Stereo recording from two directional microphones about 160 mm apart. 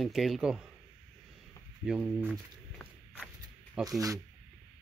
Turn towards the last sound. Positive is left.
turn(degrees=-5)  # may be behind; listen again after turning